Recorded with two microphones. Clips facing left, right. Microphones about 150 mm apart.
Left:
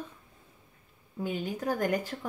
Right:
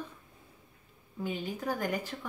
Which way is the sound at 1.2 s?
45° left (ahead or behind).